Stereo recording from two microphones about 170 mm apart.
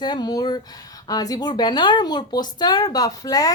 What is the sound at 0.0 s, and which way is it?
Speech, 25° left (ahead or behind).